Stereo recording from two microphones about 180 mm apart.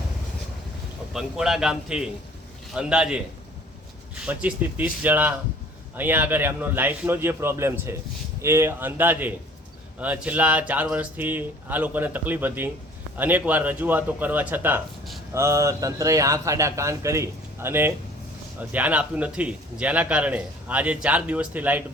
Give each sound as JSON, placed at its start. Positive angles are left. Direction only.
{"t": 1.1, "sound": "a man's voice", "side_deg": -5}
{"t": 4.3, "sound": "a man's voice", "side_deg": -5}